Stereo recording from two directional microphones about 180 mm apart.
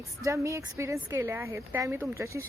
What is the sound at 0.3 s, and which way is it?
A woman's voice, 15° right (ahead or behind).